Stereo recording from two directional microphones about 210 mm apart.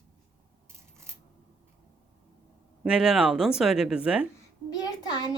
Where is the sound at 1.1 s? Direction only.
15° right (ahead or behind).